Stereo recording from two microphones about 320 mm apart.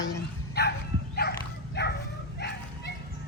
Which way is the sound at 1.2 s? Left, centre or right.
Left.